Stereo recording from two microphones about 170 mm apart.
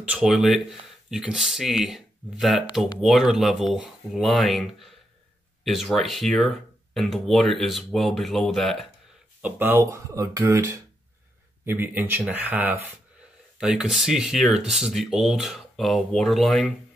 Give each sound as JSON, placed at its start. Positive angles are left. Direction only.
{"t": 0.0, "sound": "speech", "side_deg": -5}
{"t": 9.4, "sound": "speech", "side_deg": -10}